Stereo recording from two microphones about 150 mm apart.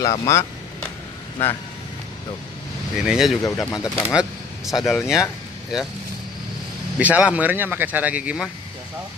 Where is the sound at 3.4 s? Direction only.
25° left (ahead or behind).